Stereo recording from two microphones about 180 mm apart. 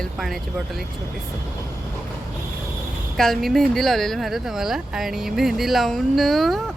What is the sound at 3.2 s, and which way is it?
Speech, centre (ahead or behind).